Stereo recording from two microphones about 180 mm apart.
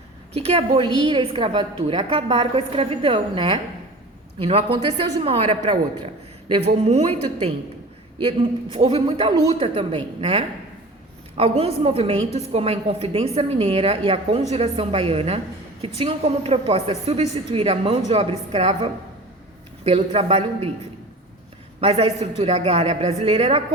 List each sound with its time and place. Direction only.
0.9 s a woman's voice: 25° right (ahead or behind)
21.8 s a woman's voice: 35° right (ahead or behind)